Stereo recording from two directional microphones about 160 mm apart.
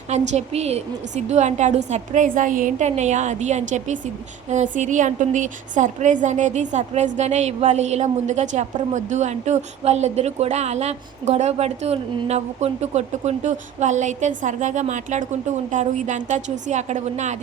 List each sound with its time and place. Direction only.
0.1 s a woman's voice: 45° right (ahead or behind)